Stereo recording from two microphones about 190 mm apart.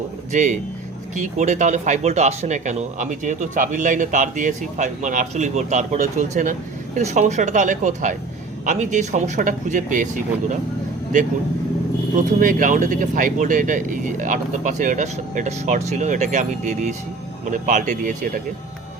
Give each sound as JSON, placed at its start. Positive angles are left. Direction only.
{"t": 0.3, "sound": "speech", "side_deg": -40}
{"t": 12.1, "sound": "speech", "side_deg": -45}